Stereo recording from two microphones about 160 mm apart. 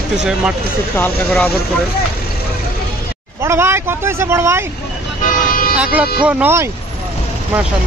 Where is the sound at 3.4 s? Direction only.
15° right (ahead or behind).